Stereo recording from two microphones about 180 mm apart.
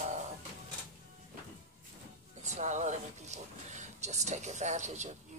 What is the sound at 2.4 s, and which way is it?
Speech, 40° right (ahead or behind).